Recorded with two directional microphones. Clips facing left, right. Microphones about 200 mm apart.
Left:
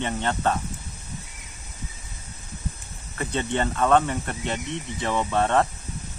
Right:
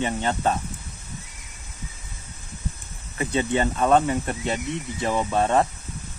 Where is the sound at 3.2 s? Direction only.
10° right (ahead or behind).